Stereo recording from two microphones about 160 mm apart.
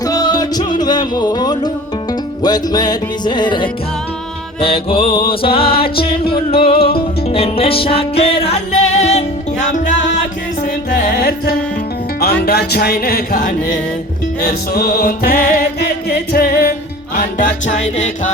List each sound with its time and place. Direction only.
0.0 s music: 25° left (ahead or behind); by 9.9 s 50° left (ahead or behind)
11.1 s music: 65° left (ahead or behind)
12.2 s music: 75° left (ahead or behind)
17.2 s music: 55° left (ahead or behind)